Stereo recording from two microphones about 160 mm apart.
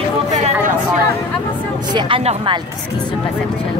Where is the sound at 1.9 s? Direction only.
35° right (ahead or behind).